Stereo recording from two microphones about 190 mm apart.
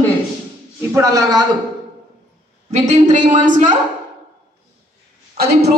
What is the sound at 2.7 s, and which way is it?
A woman's voice, 35° right (ahead or behind).